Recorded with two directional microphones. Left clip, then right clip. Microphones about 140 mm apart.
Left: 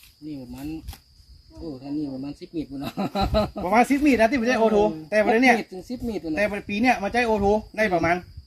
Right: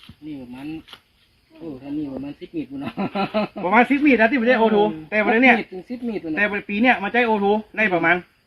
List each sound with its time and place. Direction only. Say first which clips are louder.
2.2 s speech: right 2 dB; 15° left (ahead or behind)
3.6 s speech: right 4 dB; 60° left (ahead or behind)
4.4 s speech: right 3 dB; 55° left (ahead or behind)
5.5 s speech: right 3 dB; 15° left (ahead or behind)
6.3 s speech: right 3 dB; 50° left (ahead or behind)